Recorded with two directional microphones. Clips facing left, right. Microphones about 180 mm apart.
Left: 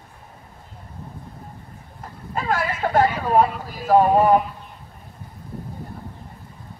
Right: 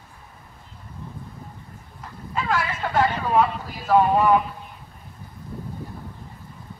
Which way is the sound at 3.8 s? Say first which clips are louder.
Left 2 dB; 45° left (ahead or behind).